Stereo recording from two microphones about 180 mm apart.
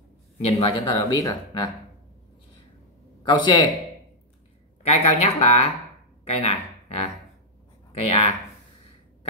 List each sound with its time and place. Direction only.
0.4 s a man's voice: 30° left (ahead or behind)
3.3 s a man's voice: 25° left (ahead or behind)
4.8 s a woman's voice: 35° left (ahead or behind)